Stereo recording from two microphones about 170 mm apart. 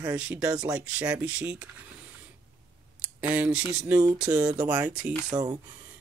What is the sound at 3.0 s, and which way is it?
Speech, 10° right (ahead or behind).